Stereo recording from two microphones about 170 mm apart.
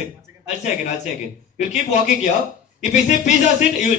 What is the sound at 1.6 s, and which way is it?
Speech, 40° left (ahead or behind).